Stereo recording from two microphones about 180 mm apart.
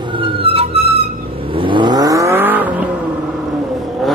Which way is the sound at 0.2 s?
30° right (ahead or behind).